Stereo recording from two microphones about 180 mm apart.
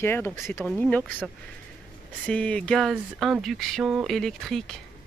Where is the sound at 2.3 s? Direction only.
5° left (ahead or behind).